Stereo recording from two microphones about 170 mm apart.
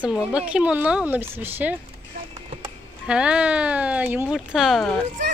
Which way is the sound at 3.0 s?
5° right (ahead or behind).